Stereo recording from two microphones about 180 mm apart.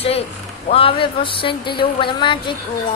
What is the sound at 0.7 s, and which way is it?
Speech, 30° left (ahead or behind).